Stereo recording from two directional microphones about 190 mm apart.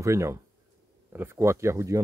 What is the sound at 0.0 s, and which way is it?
Speech, 15° right (ahead or behind).